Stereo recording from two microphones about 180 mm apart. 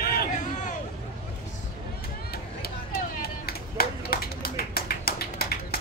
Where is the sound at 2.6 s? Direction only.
60° left (ahead or behind).